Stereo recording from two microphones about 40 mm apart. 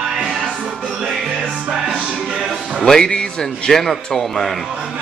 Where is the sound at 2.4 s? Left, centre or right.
Centre.